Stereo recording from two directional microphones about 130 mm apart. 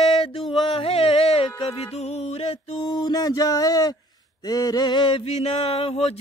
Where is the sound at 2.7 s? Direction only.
35° left (ahead or behind).